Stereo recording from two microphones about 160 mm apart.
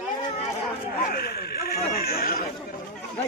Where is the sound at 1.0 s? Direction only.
75° left (ahead or behind).